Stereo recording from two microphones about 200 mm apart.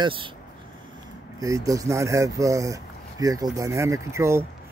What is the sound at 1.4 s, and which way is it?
Speech, 15° right (ahead or behind).